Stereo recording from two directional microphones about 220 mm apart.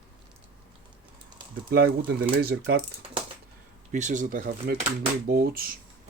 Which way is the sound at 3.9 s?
35° right (ahead or behind).